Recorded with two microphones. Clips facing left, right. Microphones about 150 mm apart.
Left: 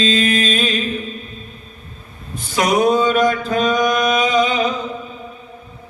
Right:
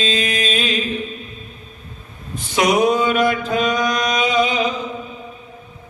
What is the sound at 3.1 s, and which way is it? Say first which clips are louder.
Mantra: left 1 dB; 40° left (ahead or behind).